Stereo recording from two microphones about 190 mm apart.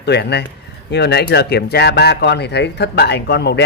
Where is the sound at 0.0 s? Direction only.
60° left (ahead or behind).